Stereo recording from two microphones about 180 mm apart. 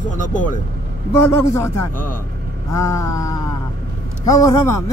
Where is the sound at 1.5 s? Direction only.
15° left (ahead or behind).